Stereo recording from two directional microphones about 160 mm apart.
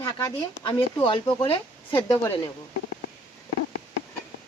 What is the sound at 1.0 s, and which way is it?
Speech, 30° left (ahead or behind).